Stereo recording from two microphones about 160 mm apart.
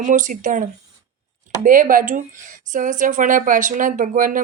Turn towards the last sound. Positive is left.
turn(degrees=-55)  # may be behind; listen again after turning